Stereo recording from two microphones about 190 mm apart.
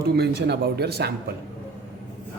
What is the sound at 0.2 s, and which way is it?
Speech, 60° right (ahead or behind).